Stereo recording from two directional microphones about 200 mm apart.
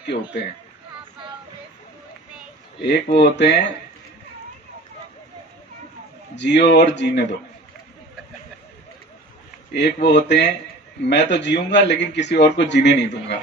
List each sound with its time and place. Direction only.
0.1 s speech: 30° left (ahead or behind)
2.9 s a man's voice: 60° left (ahead or behind)
6.3 s a man's voice: 60° left (ahead or behind)
9.7 s a man's voice: 55° left (ahead or behind)